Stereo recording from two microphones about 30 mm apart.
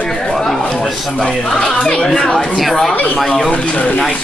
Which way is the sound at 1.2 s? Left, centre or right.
Centre.